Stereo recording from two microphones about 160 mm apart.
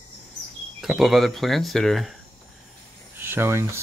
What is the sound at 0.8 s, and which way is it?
Speech, centre (ahead or behind).